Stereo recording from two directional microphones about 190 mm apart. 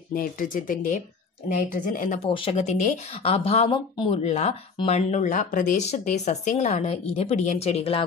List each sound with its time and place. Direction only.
0.1 s speech: 45° left (ahead or behind)
2.2 s speech: 30° left (ahead or behind)